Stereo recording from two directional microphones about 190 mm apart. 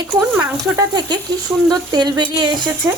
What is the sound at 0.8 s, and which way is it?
Speech, 20° right (ahead or behind).